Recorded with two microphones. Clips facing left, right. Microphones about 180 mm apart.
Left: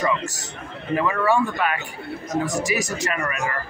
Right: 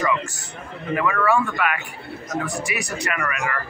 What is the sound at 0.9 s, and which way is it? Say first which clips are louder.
Speech: even; 30° left (ahead or behind).